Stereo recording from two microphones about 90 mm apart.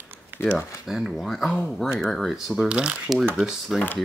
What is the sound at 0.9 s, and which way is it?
Speech, 5° right (ahead or behind).